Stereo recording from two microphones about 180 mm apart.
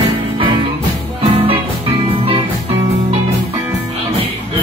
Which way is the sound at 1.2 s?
30° right (ahead or behind).